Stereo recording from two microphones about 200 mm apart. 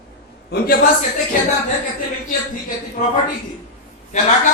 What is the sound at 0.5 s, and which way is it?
Speech, 50° left (ahead or behind).